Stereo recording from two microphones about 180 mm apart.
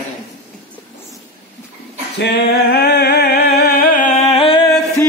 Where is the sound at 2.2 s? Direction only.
65° left (ahead or behind); by 4.6 s 30° left (ahead or behind).